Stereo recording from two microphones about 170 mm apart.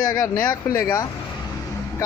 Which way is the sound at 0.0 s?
55° left (ahead or behind).